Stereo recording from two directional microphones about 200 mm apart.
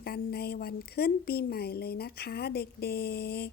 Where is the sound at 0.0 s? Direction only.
50° left (ahead or behind).